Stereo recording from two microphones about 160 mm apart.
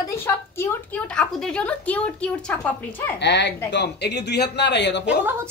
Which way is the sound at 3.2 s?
90° left.